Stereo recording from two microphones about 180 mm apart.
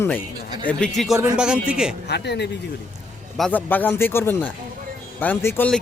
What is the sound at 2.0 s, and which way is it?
Speech, 65° left (ahead or behind).